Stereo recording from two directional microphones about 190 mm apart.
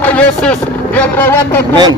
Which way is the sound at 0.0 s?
5° left (ahead or behind).